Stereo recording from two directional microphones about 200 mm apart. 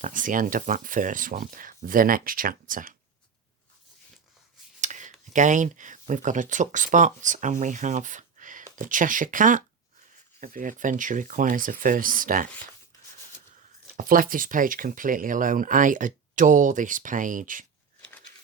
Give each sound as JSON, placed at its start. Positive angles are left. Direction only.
{"t": 0.0, "sound": "speech", "side_deg": -40}
{"t": 4.8, "sound": "a sound", "side_deg": -40}
{"t": 5.3, "sound": "speech", "side_deg": -40}
{"t": 13.9, "sound": "speech", "side_deg": -45}